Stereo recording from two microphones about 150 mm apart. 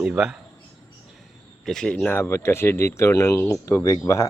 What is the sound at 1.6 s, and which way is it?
Speech, 5° left (ahead or behind).